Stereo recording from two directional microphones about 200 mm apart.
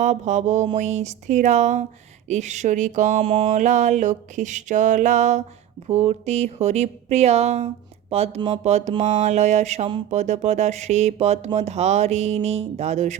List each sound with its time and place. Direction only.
0.0 s speech: 35° right (ahead or behind)